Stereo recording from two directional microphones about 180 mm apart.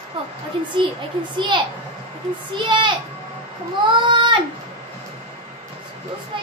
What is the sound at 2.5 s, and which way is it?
Speech, 25° right (ahead or behind).